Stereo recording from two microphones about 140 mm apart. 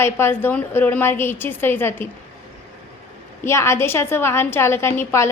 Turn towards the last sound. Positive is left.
turn(degrees=20)  # may be behind; listen again after turning